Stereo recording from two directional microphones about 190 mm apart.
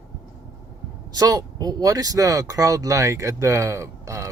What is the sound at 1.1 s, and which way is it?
Speech, 20° right (ahead or behind).